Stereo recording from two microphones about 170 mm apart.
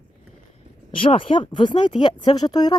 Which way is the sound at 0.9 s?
30° left (ahead or behind).